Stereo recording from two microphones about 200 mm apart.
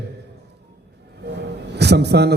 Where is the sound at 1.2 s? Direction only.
60° right (ahead or behind).